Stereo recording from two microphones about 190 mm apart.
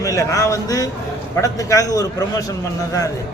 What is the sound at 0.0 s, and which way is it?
A man's voice, 15° left (ahead or behind).